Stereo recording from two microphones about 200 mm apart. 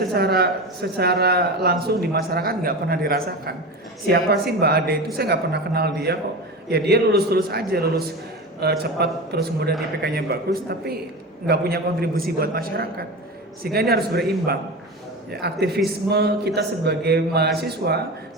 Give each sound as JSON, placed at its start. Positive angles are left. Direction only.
{"t": 0.1, "sound": "a man's voice", "side_deg": -55}